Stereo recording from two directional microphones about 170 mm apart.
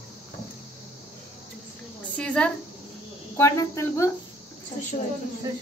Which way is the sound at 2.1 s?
5° left (ahead or behind).